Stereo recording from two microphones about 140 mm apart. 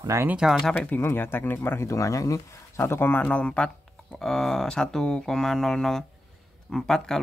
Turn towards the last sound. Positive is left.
turn(degrees=5)  # may be behind; listen again after turning